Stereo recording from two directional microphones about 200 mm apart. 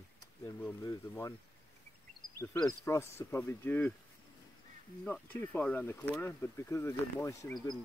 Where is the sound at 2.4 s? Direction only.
5° left (ahead or behind).